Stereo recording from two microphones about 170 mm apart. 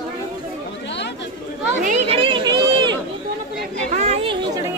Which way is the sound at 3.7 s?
40° right (ahead or behind).